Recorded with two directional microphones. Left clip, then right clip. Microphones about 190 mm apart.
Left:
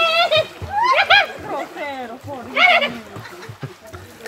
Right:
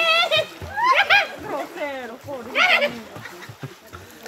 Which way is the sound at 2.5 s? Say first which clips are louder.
Left 4 dB; 60° right (ahead or behind).